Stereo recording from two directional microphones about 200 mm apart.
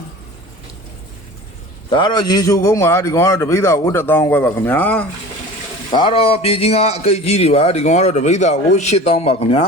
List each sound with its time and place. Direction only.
1.9 s a man's voice: 20° left (ahead or behind)
5.9 s a man's voice: 25° left (ahead or behind)